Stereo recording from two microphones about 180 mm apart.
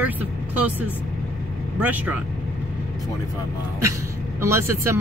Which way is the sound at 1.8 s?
10° right (ahead or behind).